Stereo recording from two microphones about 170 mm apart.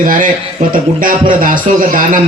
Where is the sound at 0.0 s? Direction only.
55° right (ahead or behind).